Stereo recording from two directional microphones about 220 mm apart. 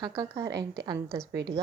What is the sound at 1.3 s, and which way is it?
Speech, 50° right (ahead or behind).